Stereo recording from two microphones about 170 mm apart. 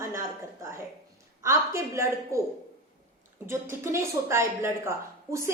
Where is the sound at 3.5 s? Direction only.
15° right (ahead or behind).